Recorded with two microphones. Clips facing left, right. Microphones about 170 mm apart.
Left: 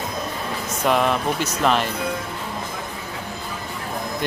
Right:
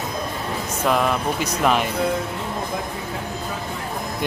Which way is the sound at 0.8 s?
Centre (ahead or behind).